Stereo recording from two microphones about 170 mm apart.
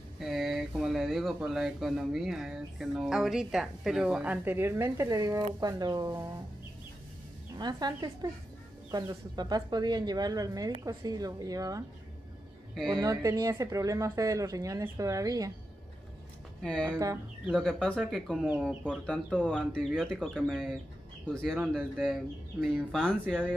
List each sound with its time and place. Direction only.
0.2 s speech: centre (ahead or behind); by 6.1 s 25° right (ahead or behind)
7.5 s speech: 25° right (ahead or behind)
12.7 s speech: 5° left (ahead or behind)
13.0 s speech: 20° right (ahead or behind)
16.6 s speech: 5° left (ahead or behind)